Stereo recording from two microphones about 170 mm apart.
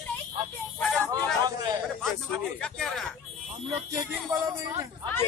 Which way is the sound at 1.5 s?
25° right (ahead or behind).